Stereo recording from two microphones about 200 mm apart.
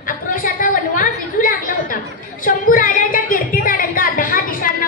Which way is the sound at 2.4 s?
45° left (ahead or behind).